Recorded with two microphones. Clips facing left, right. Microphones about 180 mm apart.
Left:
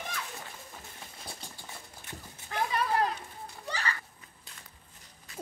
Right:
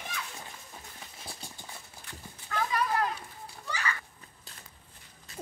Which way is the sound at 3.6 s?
30° left (ahead or behind).